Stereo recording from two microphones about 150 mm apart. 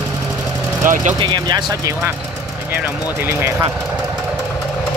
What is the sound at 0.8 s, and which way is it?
Speech, 60° right (ahead or behind).